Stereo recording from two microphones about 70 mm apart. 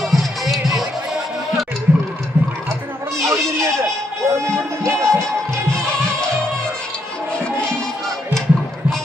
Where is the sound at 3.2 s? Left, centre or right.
Right.